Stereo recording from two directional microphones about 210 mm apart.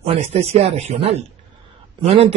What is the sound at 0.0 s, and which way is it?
Speech, 30° right (ahead or behind).